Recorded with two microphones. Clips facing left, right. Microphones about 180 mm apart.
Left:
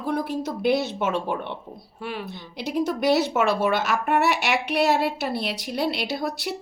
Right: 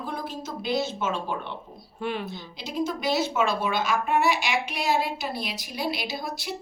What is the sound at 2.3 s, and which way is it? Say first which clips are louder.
A woman's voice: left 5 dB; 65° left (ahead or behind).